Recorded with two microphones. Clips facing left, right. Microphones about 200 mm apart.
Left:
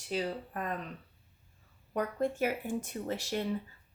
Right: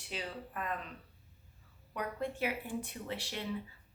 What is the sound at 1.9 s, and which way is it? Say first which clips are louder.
A woman's voice: left 6 dB; 45° left (ahead or behind).